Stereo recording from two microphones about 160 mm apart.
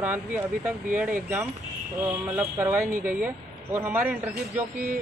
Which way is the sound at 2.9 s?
55° right (ahead or behind).